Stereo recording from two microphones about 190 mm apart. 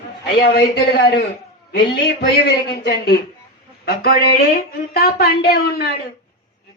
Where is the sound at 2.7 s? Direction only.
60° left (ahead or behind).